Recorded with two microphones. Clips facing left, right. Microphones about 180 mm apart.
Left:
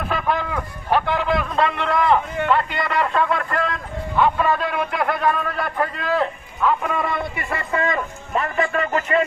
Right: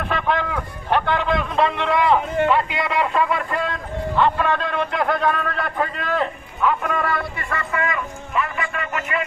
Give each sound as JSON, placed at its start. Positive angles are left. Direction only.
{"t": 0.0, "sound": "a man's voice", "side_deg": 5}
{"t": 7.2, "sound": "a man's voice", "side_deg": 25}